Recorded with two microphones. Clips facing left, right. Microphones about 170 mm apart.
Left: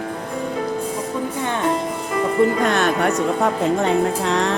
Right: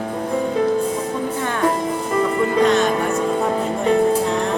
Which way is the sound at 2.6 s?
60° left (ahead or behind).